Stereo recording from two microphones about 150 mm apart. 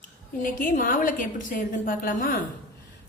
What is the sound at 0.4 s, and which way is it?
A woman's voice, 65° left (ahead or behind).